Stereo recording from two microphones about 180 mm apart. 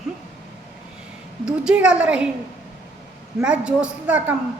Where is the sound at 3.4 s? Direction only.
5° right (ahead or behind).